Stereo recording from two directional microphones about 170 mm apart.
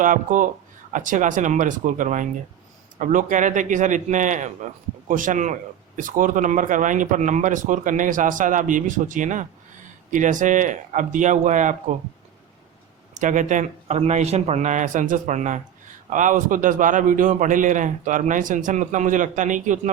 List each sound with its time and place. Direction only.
0.0 s a man's voice: 50° right (ahead or behind)
13.1 s a man's voice: 50° right (ahead or behind)